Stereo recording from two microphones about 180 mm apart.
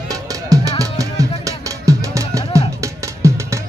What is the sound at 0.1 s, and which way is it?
Music, 20° right (ahead or behind).